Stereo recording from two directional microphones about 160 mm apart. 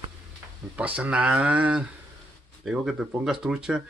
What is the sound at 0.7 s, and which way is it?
Speech, 10° right (ahead or behind).